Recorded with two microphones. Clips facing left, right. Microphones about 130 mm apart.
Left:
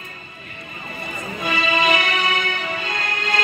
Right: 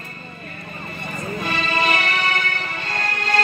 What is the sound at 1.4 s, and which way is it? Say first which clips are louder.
Music: left 3 dB; 50° right (ahead or behind).